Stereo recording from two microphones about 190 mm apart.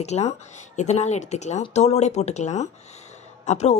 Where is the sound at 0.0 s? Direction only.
35° left (ahead or behind).